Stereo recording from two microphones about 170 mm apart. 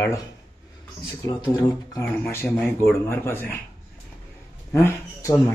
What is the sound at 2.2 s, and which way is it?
Speech, 5° left (ahead or behind).